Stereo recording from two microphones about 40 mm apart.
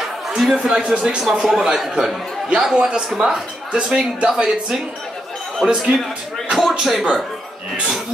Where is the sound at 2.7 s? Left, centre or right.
Right.